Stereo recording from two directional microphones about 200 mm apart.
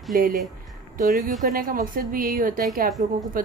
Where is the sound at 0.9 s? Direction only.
40° right (ahead or behind).